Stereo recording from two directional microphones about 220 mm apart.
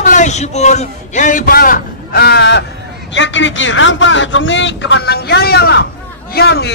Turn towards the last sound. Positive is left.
turn(degrees=50)  # may be behind; listen again after turning